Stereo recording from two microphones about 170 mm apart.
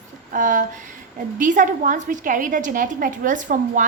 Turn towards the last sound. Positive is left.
turn(degrees=-50)  # may be behind; listen again after turning